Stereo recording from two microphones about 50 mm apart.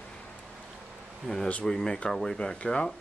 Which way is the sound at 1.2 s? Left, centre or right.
Centre.